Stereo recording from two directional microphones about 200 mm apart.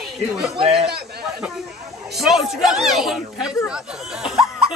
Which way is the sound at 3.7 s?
5° right (ahead or behind).